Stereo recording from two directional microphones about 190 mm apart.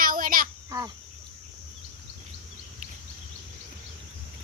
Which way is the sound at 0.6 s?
20° right (ahead or behind).